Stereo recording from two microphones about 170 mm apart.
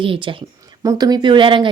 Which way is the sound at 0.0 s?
30° right (ahead or behind).